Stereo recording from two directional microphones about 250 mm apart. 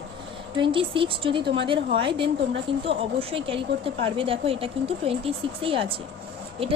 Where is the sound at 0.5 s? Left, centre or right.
Centre.